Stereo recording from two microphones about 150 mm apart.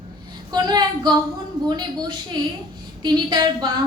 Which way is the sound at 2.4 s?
30° right (ahead or behind).